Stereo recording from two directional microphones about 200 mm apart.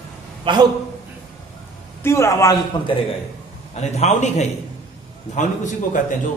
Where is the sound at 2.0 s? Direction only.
15° left (ahead or behind).